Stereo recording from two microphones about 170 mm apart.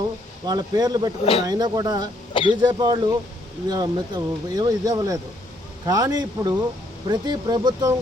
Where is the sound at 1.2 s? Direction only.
35° left (ahead or behind).